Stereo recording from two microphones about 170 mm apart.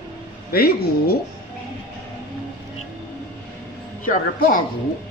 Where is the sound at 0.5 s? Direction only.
65° left (ahead or behind).